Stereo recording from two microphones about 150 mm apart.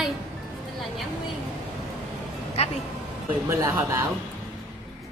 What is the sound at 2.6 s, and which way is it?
Speech, 40° left (ahead or behind).